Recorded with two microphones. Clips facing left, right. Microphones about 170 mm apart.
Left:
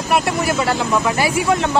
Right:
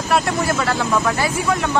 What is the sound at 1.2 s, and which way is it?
Speech, 20° left (ahead or behind).